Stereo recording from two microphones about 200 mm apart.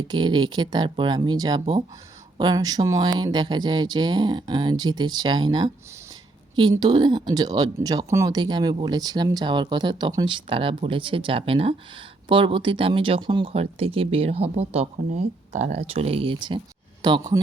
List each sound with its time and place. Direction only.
0.1 s speech: 20° right (ahead or behind)